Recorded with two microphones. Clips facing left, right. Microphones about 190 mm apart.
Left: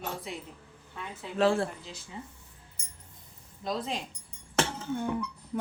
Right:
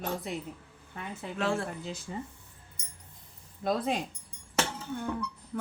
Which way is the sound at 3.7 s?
55° right (ahead or behind).